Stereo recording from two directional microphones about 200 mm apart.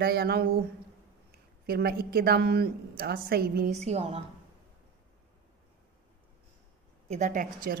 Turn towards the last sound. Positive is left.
turn(degrees=-45)  # may be behind; listen again after turning